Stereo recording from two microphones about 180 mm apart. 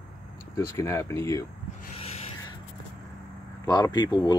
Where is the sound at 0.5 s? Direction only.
15° left (ahead or behind).